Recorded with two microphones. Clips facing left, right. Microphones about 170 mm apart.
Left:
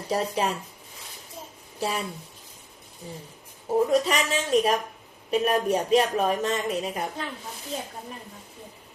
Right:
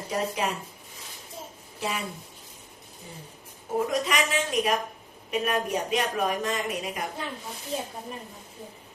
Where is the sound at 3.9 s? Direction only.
30° left (ahead or behind).